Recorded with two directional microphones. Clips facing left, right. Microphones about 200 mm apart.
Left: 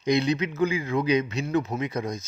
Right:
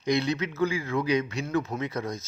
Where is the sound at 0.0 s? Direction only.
20° left (ahead or behind).